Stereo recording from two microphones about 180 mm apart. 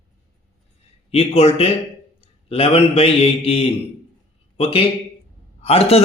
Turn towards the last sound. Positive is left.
turn(degrees=35)  # may be behind; listen again after turning